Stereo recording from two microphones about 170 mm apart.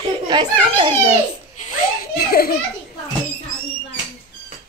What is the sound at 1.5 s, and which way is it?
Laughter, 45° left (ahead or behind).